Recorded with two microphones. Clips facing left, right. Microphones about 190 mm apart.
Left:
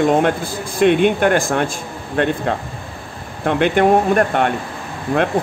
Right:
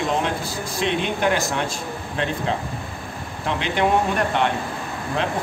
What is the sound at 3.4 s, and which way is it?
Speech, 55° left (ahead or behind).